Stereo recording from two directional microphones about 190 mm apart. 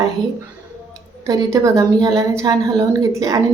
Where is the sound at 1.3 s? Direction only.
20° right (ahead or behind).